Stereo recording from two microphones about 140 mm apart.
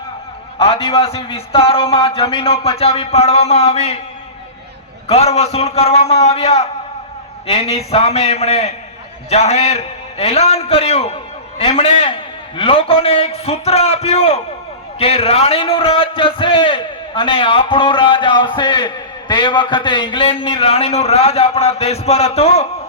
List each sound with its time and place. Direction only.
0.6 s a man's voice: 40° left (ahead or behind)
5.0 s a man's voice: 50° left (ahead or behind)